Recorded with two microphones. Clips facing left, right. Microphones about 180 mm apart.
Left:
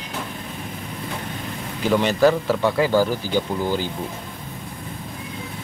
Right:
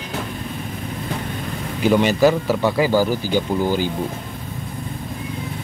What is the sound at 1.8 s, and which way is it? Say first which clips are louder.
A man's voice: right 2 dB; 5° right (ahead or behind).